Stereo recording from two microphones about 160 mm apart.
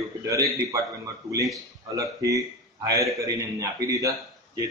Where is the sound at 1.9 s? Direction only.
20° right (ahead or behind).